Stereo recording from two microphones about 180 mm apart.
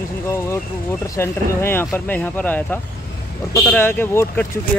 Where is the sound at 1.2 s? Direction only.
15° left (ahead or behind).